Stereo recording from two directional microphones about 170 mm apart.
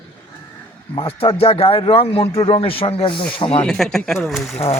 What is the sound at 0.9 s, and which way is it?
A man's voice, 35° left (ahead or behind).